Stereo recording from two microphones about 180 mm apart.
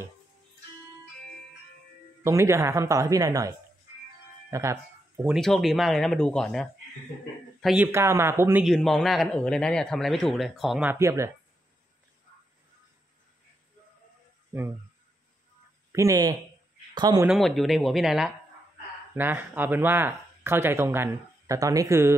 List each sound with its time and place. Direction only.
2.2 s speech: 15° right (ahead or behind)
5.3 s speech: centre (ahead or behind)
7.6 s speech: 10° right (ahead or behind)
8.6 s speech: centre (ahead or behind); by 11.3 s 15° right (ahead or behind)
14.5 s speech: 10° right (ahead or behind)
15.9 s speech: 15° right (ahead or behind)
17.3 s speech: centre (ahead or behind); by 22.1 s 15° right (ahead or behind)